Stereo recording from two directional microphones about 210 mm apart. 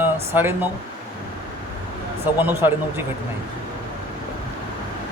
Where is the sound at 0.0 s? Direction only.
10° right (ahead or behind).